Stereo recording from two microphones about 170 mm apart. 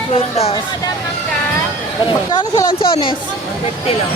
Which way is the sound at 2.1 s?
25° left (ahead or behind).